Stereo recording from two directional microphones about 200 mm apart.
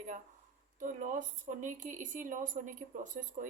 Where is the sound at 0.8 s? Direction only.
40° right (ahead or behind).